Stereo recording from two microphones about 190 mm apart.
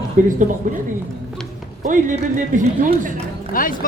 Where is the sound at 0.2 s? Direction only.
40° right (ahead or behind).